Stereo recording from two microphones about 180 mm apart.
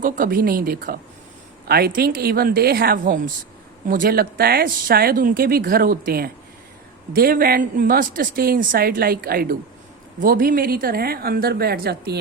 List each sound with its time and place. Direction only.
0.0 s speech: 50° right (ahead or behind)